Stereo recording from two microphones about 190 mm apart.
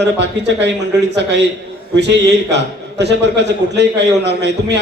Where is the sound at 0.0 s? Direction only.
65° right (ahead or behind).